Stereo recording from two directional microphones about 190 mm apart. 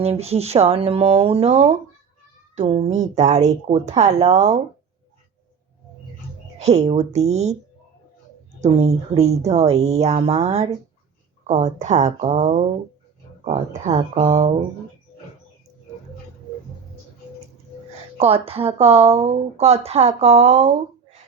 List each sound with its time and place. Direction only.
0.0 s speech: 35° right (ahead or behind)
6.6 s speech: 35° right (ahead or behind)
8.6 s speech: 35° right (ahead or behind)
18.2 s speech: 30° right (ahead or behind)